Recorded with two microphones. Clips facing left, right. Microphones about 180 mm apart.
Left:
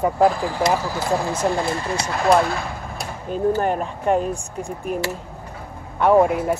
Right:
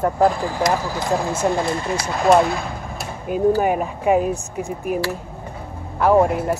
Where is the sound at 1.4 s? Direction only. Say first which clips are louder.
Right 2 dB; 5° right (ahead or behind).